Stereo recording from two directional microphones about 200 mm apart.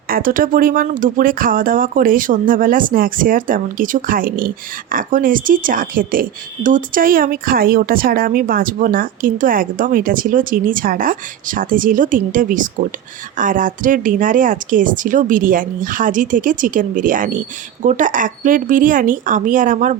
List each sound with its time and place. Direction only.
0.1 s speech: 45° right (ahead or behind)